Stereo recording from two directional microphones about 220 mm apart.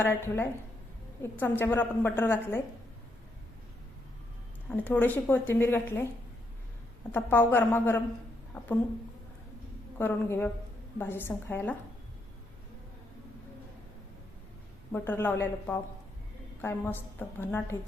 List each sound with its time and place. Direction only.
0.0 s a woman's voice: 10° left (ahead or behind)
4.7 s a woman's voice: 5° left (ahead or behind)
7.1 s a woman's voice: 10° left (ahead or behind)
10.0 s a woman's voice: 10° left (ahead or behind)
14.9 s a woman's voice: 10° left (ahead or behind)